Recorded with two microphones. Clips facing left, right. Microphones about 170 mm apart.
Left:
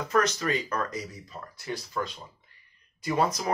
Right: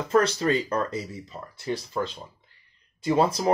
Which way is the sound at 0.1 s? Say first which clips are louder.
Right 5 dB; 30° right (ahead or behind).